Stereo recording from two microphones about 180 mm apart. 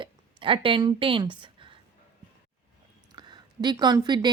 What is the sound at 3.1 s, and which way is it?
A woman's voice, 25° right (ahead or behind).